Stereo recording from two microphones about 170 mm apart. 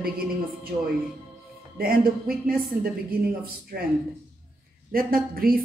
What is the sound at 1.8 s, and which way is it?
A woman's voice, 60° right (ahead or behind).